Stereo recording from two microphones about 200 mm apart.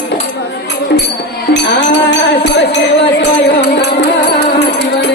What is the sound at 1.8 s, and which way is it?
Music, 60° left (ahead or behind).